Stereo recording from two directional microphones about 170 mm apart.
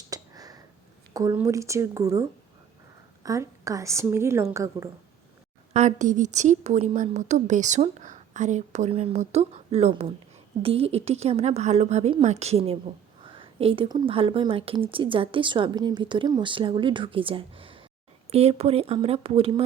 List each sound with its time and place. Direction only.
0.1 s a sound: 20° right (ahead or behind)
1.1 s speech: 20° right (ahead or behind)
3.2 s a woman's voice: 20° right (ahead or behind)
5.7 s a woman's voice: 45° right (ahead or behind)